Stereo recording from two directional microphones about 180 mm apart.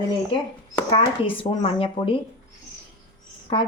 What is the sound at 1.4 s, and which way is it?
Speech, 30° left (ahead or behind).